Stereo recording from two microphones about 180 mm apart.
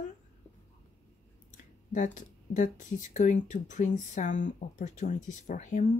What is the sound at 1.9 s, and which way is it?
Speech, 45° left (ahead or behind).